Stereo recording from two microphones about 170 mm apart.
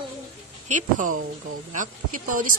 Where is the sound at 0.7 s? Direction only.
50° right (ahead or behind).